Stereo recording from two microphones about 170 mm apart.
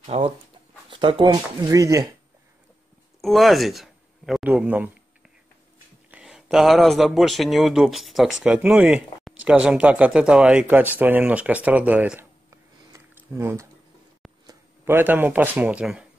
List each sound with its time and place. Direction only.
0.0 s speech: 35° right (ahead or behind); by 2.1 s 20° right (ahead or behind)
3.2 s speech: centre (ahead or behind)
6.1 s speech: 5° right (ahead or behind)